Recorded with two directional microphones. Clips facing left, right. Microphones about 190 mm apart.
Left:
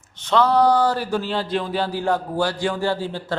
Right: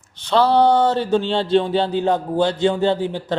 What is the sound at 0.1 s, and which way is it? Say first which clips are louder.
Speech: right 2 dB; 35° right (ahead or behind).